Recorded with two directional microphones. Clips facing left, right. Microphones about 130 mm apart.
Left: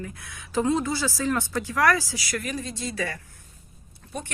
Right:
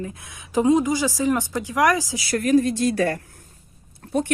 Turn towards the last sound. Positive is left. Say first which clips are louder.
# right 12 dB
turn(degrees=-60)  # may be behind; listen again after turning